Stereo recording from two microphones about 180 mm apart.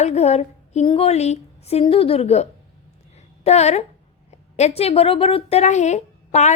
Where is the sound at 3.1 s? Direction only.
35° left (ahead or behind).